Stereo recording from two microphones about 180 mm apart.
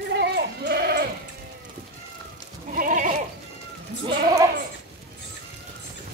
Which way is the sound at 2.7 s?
45° right (ahead or behind).